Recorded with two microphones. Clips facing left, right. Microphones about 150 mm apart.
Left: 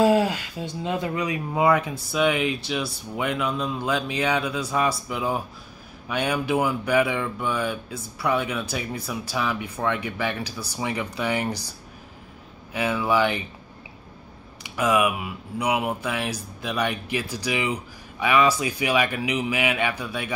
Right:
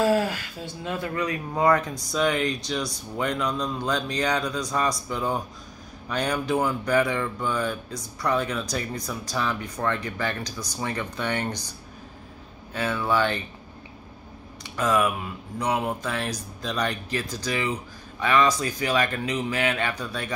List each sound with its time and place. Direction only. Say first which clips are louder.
0.0 s speech: left 3 dB; 20° left (ahead or behind)
12.7 s speech: left 2 dB; 10° left (ahead or behind)
14.6 s speech: left 2 dB; 10° left (ahead or behind)